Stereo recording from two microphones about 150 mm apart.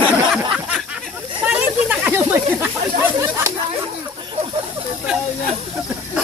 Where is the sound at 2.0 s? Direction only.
15° right (ahead or behind).